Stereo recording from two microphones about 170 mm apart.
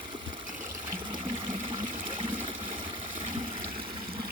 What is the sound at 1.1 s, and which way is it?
Water, 30° right (ahead or behind).